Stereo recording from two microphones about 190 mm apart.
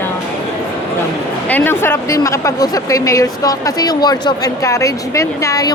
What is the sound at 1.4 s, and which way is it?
Speech, 10° left (ahead or behind).